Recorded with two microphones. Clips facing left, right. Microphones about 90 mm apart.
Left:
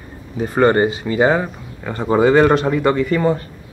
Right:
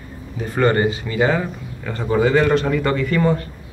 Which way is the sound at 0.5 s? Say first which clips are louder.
Left 3 dB; 30° left (ahead or behind).